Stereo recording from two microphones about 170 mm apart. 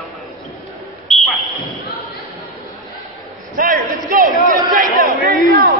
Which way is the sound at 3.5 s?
55° right (ahead or behind).